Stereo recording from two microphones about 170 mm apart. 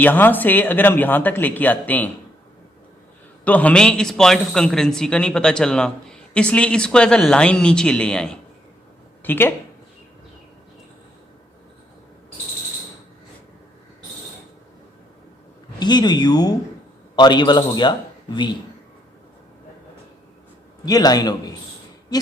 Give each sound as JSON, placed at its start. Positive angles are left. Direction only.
{"t": 0.0, "sound": "speech", "side_deg": 10}
{"t": 3.4, "sound": "a man's voice", "side_deg": 10}
{"t": 15.8, "sound": "speech", "side_deg": 25}
{"t": 20.8, "sound": "speech", "side_deg": 20}